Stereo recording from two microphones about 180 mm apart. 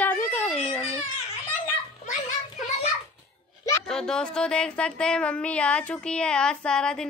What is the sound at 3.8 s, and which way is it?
Speech, 5° left (ahead or behind).